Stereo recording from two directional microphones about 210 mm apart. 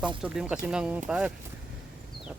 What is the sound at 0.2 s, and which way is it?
Speech, 5° right (ahead or behind).